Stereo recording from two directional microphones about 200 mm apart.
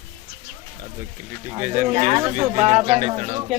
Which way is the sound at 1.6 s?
40° right (ahead or behind).